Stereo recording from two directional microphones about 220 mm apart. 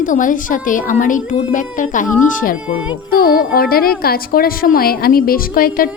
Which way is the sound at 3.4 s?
45° left (ahead or behind).